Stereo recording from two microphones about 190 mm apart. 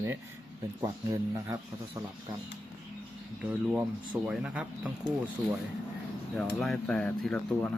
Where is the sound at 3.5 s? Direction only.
5° right (ahead or behind).